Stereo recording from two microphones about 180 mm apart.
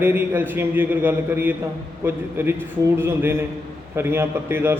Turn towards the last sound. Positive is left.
turn(degrees=-10)  # may be behind; listen again after turning